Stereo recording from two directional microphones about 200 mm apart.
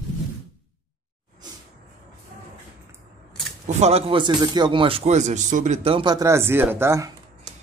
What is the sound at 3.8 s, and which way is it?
Speech, 30° right (ahead or behind).